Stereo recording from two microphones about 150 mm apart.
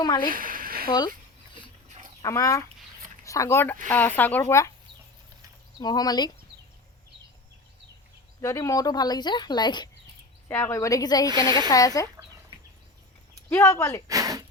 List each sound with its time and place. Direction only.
0.0 s speech: 30° left (ahead or behind)
0.3 s a sound: 70° right (ahead or behind)
0.9 s speech: 25° left (ahead or behind)
2.2 s speech: 20° left (ahead or behind)
5.8 s speech: 25° left (ahead or behind)
8.4 s speech: 20° left (ahead or behind)
11.4 s speech: 30° right (ahead or behind)
11.7 s speech: 25° left (ahead or behind)
13.5 s speech: 20° left (ahead or behind)
14.1 s a sound: 25° right (ahead or behind)